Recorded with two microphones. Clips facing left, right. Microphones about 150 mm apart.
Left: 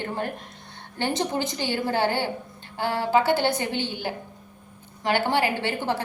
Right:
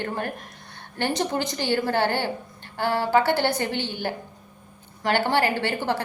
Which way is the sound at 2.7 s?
15° left (ahead or behind).